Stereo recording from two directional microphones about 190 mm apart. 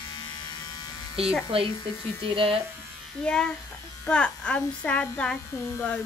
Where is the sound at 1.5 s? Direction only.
30° right (ahead or behind).